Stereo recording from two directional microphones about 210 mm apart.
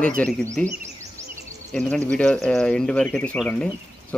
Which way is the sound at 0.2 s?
5° left (ahead or behind).